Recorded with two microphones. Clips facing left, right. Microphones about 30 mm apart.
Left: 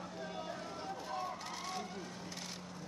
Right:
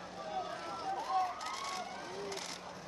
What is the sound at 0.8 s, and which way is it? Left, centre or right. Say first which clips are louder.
Run: right 10 dB; right.